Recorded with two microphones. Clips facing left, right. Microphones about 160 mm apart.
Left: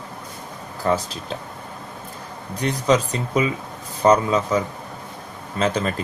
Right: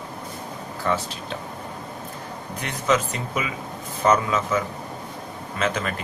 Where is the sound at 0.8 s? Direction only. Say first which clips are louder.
Left 4 dB; 40° left (ahead or behind).